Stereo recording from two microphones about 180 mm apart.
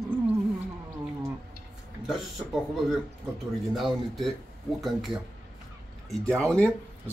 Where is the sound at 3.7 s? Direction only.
Centre (ahead or behind).